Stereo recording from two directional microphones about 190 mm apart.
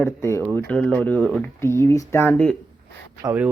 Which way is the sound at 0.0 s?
15° left (ahead or behind).